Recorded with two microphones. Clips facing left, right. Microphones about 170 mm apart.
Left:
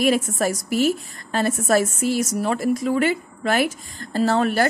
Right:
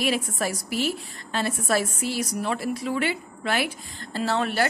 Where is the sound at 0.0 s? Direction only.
45° left (ahead or behind).